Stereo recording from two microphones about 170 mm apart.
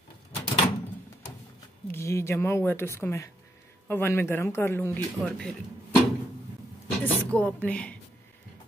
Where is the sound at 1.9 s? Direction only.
15° left (ahead or behind).